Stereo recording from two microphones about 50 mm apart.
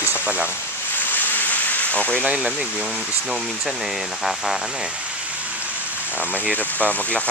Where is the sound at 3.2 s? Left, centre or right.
Centre.